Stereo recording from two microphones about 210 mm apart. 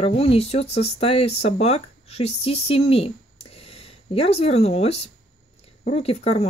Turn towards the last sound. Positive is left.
turn(degrees=30)  # may be behind; listen again after turning